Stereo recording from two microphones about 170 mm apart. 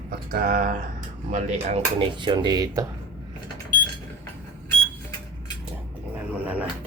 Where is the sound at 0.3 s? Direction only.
50° right (ahead or behind).